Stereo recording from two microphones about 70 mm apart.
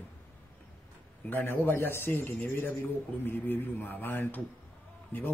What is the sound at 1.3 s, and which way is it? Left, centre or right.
A man's voice, left.